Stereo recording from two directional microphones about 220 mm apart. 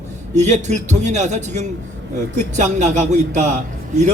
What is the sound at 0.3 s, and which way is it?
Speech, 30° right (ahead or behind).